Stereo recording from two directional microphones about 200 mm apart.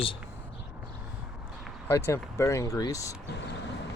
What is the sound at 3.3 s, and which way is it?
Vehicle, 60° left (ahead or behind).